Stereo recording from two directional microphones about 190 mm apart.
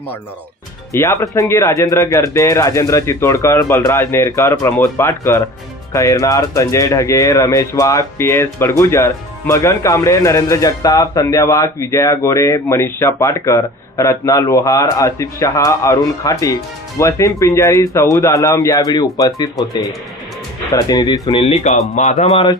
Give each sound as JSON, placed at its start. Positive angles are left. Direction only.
{"t": 0.9, "sound": "speech", "side_deg": 15}
{"t": 20.7, "sound": "speech", "side_deg": 20}